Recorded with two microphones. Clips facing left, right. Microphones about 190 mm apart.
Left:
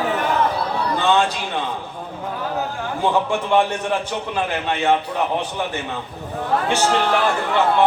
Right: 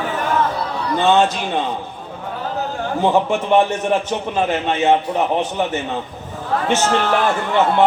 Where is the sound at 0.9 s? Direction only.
20° right (ahead or behind).